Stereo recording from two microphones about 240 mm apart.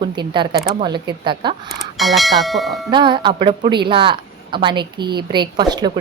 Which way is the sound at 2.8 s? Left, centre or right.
Centre.